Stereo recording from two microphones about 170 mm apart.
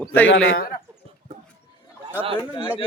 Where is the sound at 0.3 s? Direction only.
90° left.